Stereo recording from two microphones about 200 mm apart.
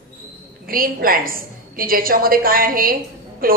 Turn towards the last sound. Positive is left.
turn(degrees=-45)  # may be behind; listen again after turning